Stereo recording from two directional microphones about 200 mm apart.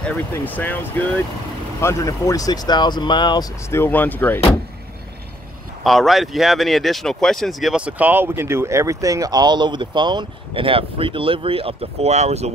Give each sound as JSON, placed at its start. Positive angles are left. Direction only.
{"t": 0.0, "sound": "speech", "side_deg": 5}
{"t": 5.9, "sound": "speech", "side_deg": 0}